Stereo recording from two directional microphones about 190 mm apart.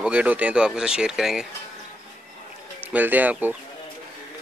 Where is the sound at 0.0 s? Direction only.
5° right (ahead or behind).